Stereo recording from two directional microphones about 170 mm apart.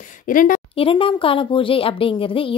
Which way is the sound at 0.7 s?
30° left (ahead or behind).